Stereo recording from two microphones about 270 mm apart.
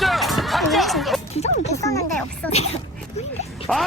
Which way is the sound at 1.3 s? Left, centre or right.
Left.